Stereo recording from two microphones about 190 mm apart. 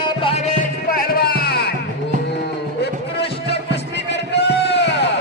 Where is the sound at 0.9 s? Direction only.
55° left (ahead or behind).